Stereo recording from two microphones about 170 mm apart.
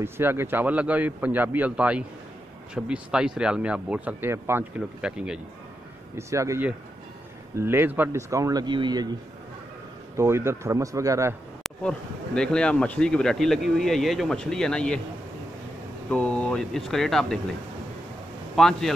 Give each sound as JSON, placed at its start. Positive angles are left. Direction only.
{"t": 0.0, "sound": "a man's voice", "side_deg": -15}
{"t": 6.1, "sound": "a man's voice", "side_deg": -15}
{"t": 10.1, "sound": "a man's voice", "side_deg": -15}
{"t": 12.4, "sound": "speech", "side_deg": 5}
{"t": 16.1, "sound": "speech", "side_deg": 5}
{"t": 18.6, "sound": "speech", "side_deg": 0}